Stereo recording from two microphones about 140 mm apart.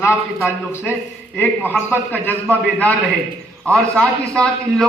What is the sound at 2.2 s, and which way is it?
A man's voice, 10° left (ahead or behind).